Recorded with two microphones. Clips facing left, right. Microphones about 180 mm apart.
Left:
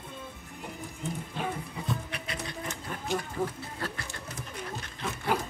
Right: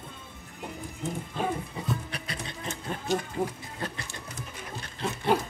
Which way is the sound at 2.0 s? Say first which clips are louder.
Right 1 dB; 35° right (ahead or behind).